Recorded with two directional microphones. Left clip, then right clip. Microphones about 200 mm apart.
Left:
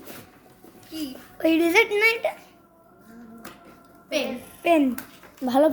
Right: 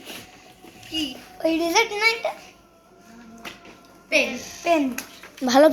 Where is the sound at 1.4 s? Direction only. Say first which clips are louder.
Left 1 dB; 50° left (ahead or behind).